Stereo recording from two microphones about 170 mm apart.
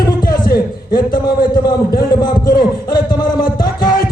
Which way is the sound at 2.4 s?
55° left (ahead or behind).